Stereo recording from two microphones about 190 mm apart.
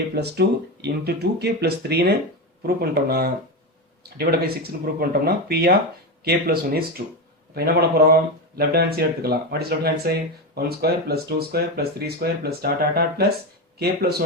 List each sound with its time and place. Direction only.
0.1 s speech: 60° right (ahead or behind)